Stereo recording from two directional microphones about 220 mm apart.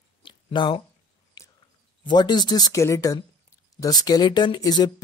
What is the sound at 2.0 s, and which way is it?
Speech, 20° left (ahead or behind).